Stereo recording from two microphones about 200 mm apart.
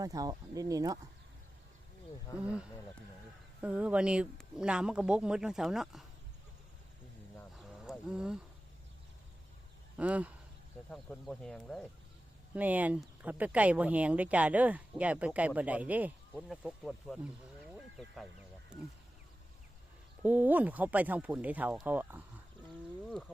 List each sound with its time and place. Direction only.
0.0 s speech: 15° right (ahead or behind)
2.4 s speech: 5° right (ahead or behind)
7.3 s a sound: centre (ahead or behind)
10.0 s speech: 5° right (ahead or behind)
10.8 s speech: 5° left (ahead or behind)
12.5 s speech: 10° right (ahead or behind)
20.2 s speech: 10° right (ahead or behind)